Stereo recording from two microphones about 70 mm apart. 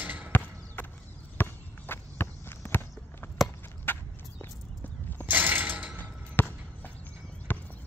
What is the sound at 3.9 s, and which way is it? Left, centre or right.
Walk, left.